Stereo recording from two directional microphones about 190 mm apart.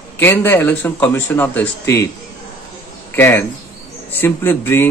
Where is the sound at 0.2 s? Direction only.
10° left (ahead or behind).